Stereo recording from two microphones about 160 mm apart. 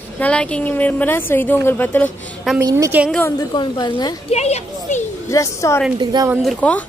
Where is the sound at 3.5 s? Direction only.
25° left (ahead or behind).